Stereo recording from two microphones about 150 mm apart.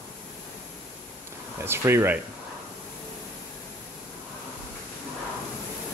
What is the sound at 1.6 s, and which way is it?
Speech, 15° right (ahead or behind).